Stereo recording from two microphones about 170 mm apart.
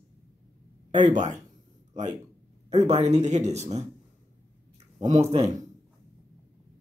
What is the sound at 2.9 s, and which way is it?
Speech, 40° right (ahead or behind).